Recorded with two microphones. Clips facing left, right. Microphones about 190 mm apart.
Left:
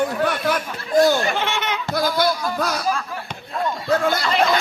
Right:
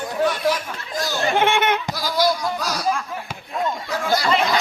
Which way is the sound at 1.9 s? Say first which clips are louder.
Left 1 dB; 55° left (ahead or behind).